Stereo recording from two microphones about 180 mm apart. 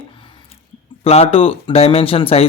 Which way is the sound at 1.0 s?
35° left (ahead or behind).